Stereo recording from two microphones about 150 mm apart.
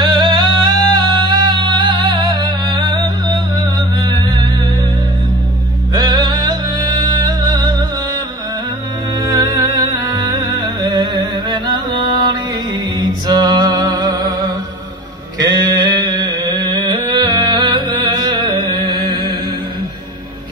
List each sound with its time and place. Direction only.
0.0 s music: 30° right (ahead or behind)
5.9 s music: 25° right (ahead or behind)
9.2 s music: 20° right (ahead or behind)
15.3 s a sound: 25° right (ahead or behind)